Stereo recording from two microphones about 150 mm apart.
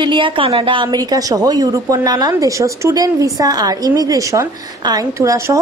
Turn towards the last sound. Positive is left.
turn(degrees=-20)  # may be behind; listen again after turning